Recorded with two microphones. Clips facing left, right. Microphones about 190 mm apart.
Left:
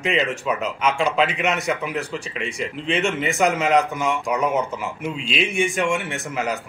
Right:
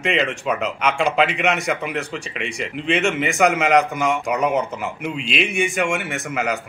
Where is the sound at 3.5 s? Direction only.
70° right (ahead or behind).